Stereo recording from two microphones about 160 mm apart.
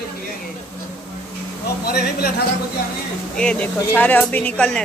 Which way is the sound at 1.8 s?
75° left (ahead or behind).